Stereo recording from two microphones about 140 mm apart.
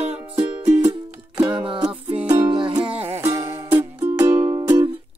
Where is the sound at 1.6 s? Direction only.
40° right (ahead or behind).